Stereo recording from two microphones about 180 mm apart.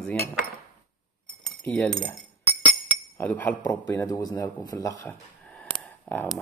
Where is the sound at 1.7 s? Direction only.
5° left (ahead or behind).